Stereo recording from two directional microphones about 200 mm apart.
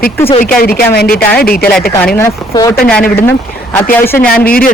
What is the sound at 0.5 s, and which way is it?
Speech, 50° left (ahead or behind).